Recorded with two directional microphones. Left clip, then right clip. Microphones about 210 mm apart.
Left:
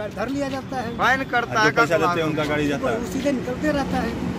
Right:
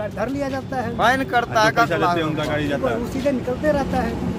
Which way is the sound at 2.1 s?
35° left (ahead or behind).